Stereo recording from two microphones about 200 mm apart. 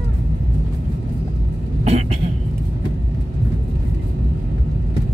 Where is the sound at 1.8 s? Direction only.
30° right (ahead or behind).